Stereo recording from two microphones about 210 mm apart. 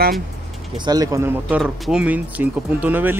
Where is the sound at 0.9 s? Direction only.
15° right (ahead or behind).